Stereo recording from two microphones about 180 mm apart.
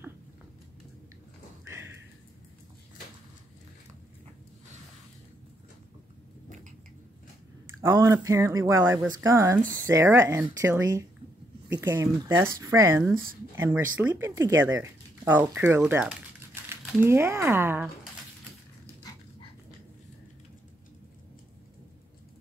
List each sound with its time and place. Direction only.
7.8 s speech: 15° right (ahead or behind)
19.1 s dog: 20° left (ahead or behind)